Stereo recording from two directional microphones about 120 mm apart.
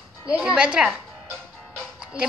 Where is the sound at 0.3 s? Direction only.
10° right (ahead or behind).